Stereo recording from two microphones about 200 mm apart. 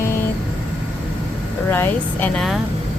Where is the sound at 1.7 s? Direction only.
10° left (ahead or behind).